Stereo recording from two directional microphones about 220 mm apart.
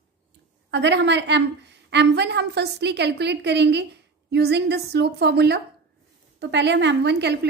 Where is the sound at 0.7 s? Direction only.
50° right (ahead or behind).